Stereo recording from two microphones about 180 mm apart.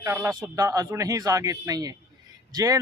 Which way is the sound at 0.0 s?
15° right (ahead or behind).